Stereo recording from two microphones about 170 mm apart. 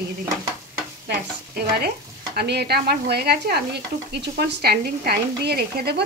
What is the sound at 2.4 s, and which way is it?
Speech, 70° right (ahead or behind).